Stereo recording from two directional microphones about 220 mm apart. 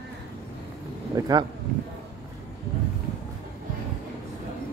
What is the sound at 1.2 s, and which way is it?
Speech, 15° right (ahead or behind).